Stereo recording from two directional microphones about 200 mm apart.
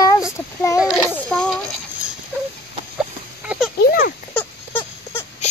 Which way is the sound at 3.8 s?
50° left (ahead or behind).